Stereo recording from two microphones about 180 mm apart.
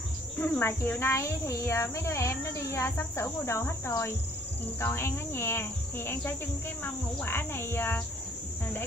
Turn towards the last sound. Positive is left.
turn(degrees=10)  # may be behind; listen again after turning